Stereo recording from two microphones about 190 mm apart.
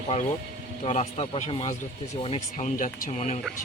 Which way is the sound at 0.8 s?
35° left (ahead or behind).